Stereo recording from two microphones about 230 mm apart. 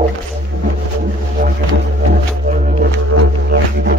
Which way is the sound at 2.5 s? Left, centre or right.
Right.